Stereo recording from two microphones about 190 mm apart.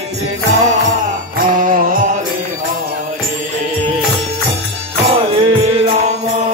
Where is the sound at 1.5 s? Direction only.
45° right (ahead or behind).